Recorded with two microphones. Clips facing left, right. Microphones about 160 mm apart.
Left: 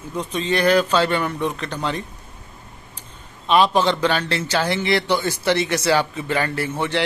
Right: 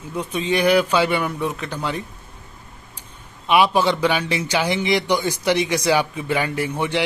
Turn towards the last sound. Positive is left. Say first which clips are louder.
# right 1 dB
turn(degrees=-15)  # may be behind; listen again after turning